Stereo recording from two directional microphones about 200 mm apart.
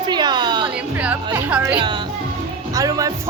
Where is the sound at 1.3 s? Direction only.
5° right (ahead or behind).